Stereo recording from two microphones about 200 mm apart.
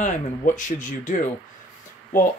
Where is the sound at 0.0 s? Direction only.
40° left (ahead or behind).